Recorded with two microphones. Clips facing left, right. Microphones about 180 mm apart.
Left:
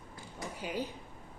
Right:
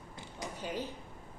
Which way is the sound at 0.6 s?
10° left (ahead or behind).